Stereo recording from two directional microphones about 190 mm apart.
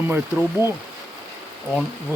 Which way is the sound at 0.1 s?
10° right (ahead or behind).